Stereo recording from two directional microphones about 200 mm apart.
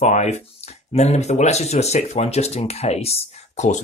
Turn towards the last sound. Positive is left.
turn(degrees=35)  # may be behind; listen again after turning